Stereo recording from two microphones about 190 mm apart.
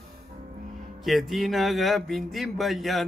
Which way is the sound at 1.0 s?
Centre (ahead or behind).